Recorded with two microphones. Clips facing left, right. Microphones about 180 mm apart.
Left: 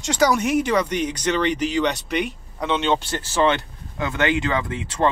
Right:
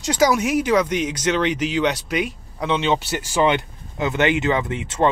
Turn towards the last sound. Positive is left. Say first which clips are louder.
# right 2 dB
turn(degrees=-20)  # may be behind; listen again after turning